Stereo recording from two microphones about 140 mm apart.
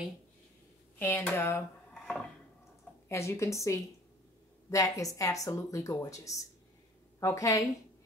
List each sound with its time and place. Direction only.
0.9 s speech: 15° left (ahead or behind)
3.1 s speech: 20° left (ahead or behind)